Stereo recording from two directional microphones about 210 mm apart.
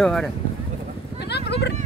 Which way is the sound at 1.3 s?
55° left (ahead or behind).